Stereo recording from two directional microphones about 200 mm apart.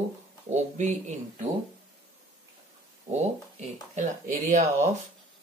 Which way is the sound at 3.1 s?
35° right (ahead or behind).